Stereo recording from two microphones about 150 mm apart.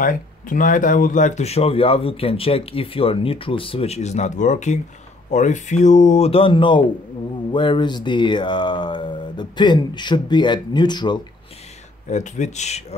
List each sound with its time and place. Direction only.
0.0 s speech: 65° left (ahead or behind); by 11.2 s 30° left (ahead or behind)
12.1 s speech: 55° left (ahead or behind)